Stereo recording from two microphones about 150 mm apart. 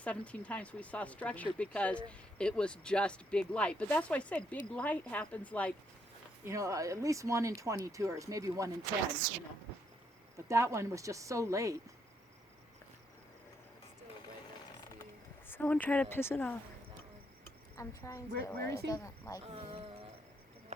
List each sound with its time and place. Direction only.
0.0 s speech: 10° left (ahead or behind)
6.4 s speech: 20° right (ahead or behind)
10.3 s speech: 20° right (ahead or behind)
15.4 s speech: 15° left (ahead or behind)
17.7 s a woman's voice: 20° left (ahead or behind)
19.5 s speech: 40° right (ahead or behind)